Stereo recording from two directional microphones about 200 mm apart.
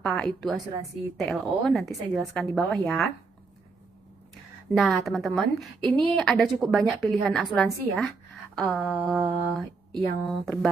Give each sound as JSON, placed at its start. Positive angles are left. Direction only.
{"t": 0.0, "sound": "a woman's voice", "side_deg": 5}
{"t": 4.6, "sound": "a woman's voice", "side_deg": 0}